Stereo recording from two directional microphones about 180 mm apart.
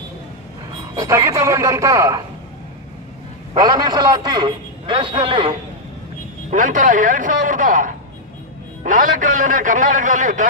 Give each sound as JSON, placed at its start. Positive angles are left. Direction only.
{"t": 0.9, "sound": "speech", "side_deg": -15}
{"t": 3.6, "sound": "a man's voice", "side_deg": -20}
{"t": 6.5, "sound": "a man's voice", "side_deg": -45}